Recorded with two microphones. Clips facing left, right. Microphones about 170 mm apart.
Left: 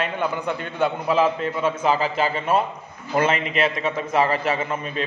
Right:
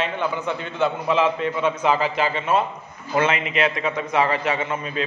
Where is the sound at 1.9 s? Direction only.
40° left (ahead or behind).